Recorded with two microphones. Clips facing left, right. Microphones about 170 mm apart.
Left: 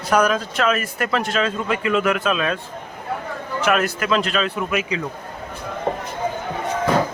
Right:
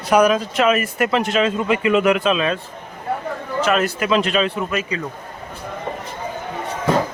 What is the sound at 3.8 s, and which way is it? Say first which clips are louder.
Speech: right 2 dB; 5° right (ahead or behind).